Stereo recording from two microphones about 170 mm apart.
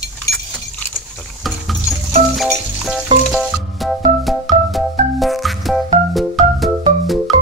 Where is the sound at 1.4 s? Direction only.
Centre (ahead or behind).